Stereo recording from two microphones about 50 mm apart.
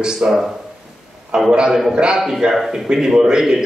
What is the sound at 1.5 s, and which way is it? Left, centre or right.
Speech, centre.